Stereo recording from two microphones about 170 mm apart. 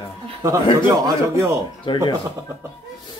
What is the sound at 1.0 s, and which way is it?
Speech, 15° right (ahead or behind).